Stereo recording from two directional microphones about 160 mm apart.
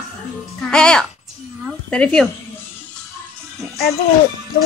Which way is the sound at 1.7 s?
5° left (ahead or behind).